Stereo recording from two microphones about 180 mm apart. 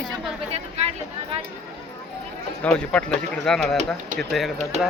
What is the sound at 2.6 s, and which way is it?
Speech, 5° left (ahead or behind).